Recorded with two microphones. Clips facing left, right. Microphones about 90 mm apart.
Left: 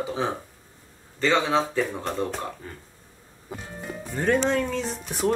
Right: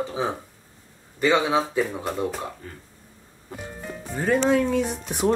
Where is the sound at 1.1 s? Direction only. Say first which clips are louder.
Right 1 dB; 10° right (ahead or behind).